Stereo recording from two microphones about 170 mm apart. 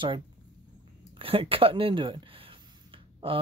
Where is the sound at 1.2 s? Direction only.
35° right (ahead or behind).